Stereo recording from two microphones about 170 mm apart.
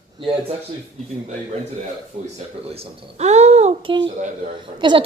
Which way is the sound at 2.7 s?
40° right (ahead or behind).